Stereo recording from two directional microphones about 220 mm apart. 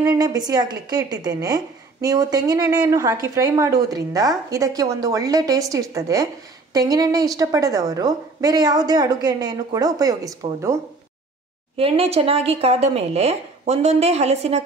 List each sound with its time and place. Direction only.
0.0 s a woman's voice: 15° right (ahead or behind)
11.7 s speech: 25° right (ahead or behind)